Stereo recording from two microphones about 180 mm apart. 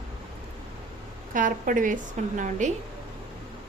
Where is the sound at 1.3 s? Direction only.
50° right (ahead or behind).